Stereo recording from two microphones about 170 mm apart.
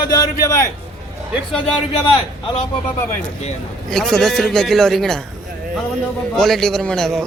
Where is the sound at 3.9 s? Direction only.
Centre (ahead or behind).